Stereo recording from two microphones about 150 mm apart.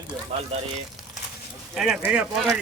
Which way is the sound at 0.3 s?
45° right (ahead or behind).